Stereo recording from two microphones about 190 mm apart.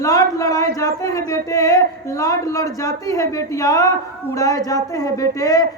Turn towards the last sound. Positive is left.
turn(degrees=20)  # may be behind; listen again after turning